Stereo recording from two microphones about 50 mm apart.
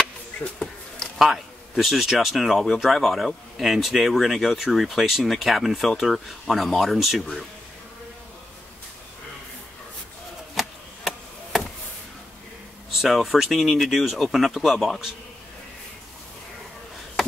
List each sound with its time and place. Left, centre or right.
0.4 s speech: left
1.1 s speech: centre
10.5 s chop: centre
13.0 s speech: centre